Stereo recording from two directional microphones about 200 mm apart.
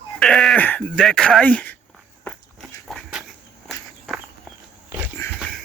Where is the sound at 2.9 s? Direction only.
Centre (ahead or behind).